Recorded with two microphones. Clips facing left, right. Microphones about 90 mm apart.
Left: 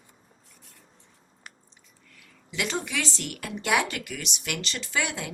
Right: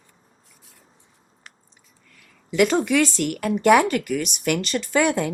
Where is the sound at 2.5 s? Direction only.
50° right (ahead or behind).